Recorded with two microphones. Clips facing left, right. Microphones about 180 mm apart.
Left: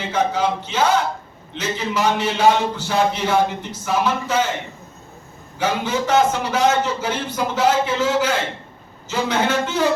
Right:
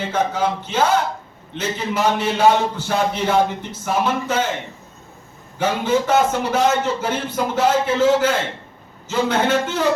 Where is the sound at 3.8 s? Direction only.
50° right (ahead or behind).